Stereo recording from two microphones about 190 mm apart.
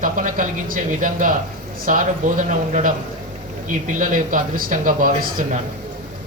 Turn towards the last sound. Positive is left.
turn(degrees=-45)  # may be behind; listen again after turning